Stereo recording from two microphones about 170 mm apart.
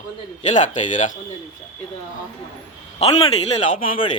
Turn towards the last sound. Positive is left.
turn(degrees=55)  # may be behind; listen again after turning